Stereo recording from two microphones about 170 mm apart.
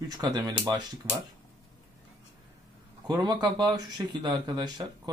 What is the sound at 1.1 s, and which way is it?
Speech, 10° left (ahead or behind).